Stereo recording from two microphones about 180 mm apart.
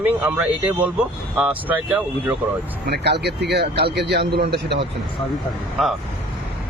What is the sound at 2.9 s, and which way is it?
Speech, 65° right (ahead or behind).